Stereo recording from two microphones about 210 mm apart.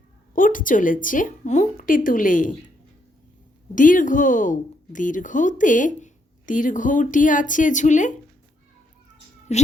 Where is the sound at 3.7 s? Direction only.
40° left (ahead or behind).